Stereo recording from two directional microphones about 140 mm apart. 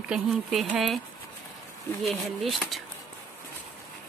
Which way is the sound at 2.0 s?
Centre (ahead or behind).